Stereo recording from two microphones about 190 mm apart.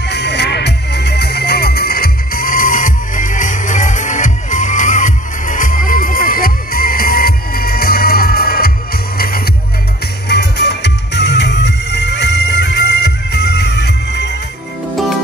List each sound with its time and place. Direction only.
0.1 s music: 65° left (ahead or behind)
10.2 s music: 60° left (ahead or behind)